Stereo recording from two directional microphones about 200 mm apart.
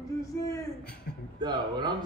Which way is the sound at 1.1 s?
50° left (ahead or behind).